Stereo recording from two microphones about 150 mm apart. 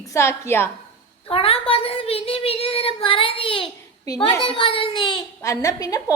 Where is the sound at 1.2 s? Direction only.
40° left (ahead or behind).